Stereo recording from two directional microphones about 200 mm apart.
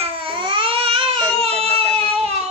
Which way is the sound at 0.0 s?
25° right (ahead or behind).